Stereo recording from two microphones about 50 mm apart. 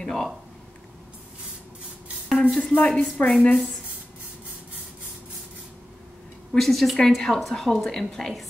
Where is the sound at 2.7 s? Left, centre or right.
Left.